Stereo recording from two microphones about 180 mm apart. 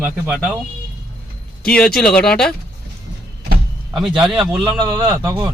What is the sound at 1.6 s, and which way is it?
Speech, 5° left (ahead or behind).